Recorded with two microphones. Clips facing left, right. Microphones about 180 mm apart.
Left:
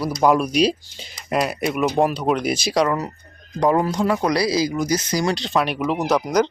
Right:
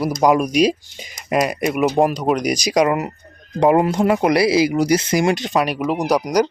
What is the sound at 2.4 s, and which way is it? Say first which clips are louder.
Speech: right 3 dB; 15° right (ahead or behind).